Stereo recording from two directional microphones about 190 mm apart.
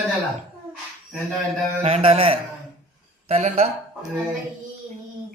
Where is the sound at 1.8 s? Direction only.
30° right (ahead or behind).